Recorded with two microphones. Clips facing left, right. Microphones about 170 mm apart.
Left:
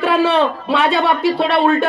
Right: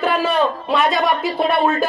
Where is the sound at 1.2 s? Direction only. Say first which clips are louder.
Left 3 dB; 80° left.